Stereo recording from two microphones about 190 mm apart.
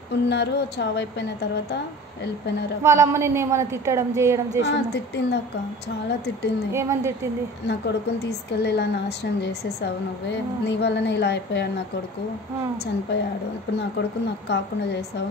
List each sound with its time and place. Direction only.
0.3 s a woman's voice: 65° left (ahead or behind)
2.8 s a woman's voice: 15° right (ahead or behind)
4.6 s a woman's voice: 65° left (ahead or behind)
6.7 s a woman's voice: 15° right (ahead or behind)
7.6 s a woman's voice: 60° left (ahead or behind)
13.7 s a woman's voice: 65° left (ahead or behind)